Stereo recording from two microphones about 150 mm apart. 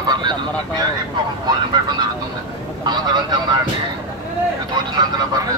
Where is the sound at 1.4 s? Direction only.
30° right (ahead or behind).